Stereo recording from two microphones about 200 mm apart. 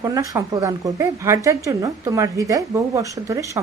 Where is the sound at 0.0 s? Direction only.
15° right (ahead or behind).